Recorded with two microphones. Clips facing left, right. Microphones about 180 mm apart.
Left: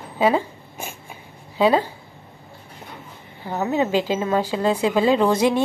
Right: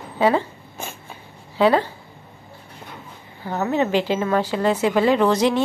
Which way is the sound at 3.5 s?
15° left (ahead or behind).